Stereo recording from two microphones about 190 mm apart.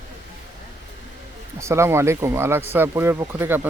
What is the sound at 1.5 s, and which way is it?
Speech, 15° right (ahead or behind).